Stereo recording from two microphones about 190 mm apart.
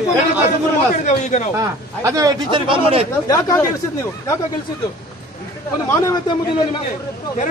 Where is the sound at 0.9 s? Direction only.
40° left (ahead or behind).